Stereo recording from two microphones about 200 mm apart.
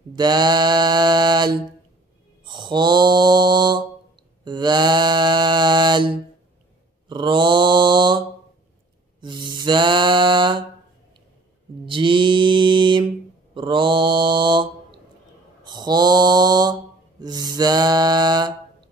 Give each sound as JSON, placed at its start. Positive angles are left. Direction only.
{"t": 0.1, "sound": "mantra", "side_deg": -20}
{"t": 9.2, "sound": "mantra", "side_deg": -25}
{"t": 11.8, "sound": "mantra", "side_deg": -25}
{"t": 17.2, "sound": "a sound", "side_deg": -20}